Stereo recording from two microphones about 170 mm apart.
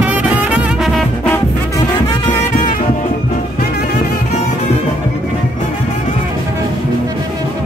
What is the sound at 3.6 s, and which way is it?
Music, 60° left (ahead or behind).